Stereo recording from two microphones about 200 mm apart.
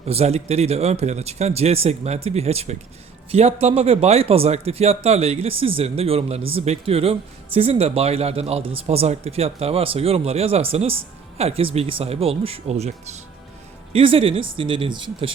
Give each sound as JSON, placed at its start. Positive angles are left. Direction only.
{"t": 0.1, "sound": "speech", "side_deg": -30}